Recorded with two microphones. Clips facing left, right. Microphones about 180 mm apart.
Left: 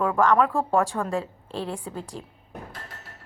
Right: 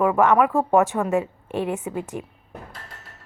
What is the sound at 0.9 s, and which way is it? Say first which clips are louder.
A woman's voice: right 5 dB; 5° right (ahead or behind).